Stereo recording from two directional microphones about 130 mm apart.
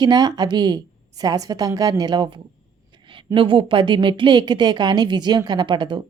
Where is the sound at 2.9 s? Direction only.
40° right (ahead or behind).